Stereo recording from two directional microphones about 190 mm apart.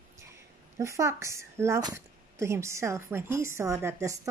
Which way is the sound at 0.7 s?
15° right (ahead or behind).